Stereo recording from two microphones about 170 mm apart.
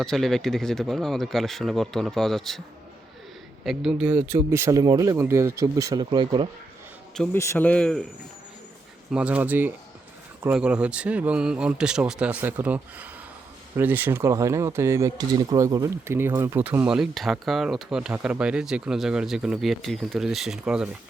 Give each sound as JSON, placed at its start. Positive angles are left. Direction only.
{"t": 0.0, "sound": "speech", "side_deg": 0}
{"t": 3.6, "sound": "speech", "side_deg": 0}
{"t": 7.3, "sound": "speech", "side_deg": 15}
{"t": 9.1, "sound": "speech", "side_deg": -10}